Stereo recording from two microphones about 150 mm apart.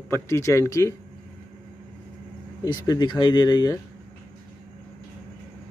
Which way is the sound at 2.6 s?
25° left (ahead or behind).